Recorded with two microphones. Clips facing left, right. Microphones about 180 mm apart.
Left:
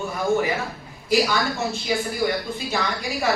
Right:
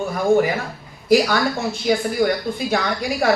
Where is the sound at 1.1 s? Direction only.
55° right (ahead or behind).